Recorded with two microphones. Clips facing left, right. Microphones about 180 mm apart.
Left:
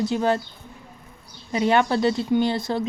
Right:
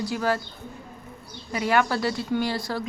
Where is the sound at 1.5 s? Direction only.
25° left (ahead or behind).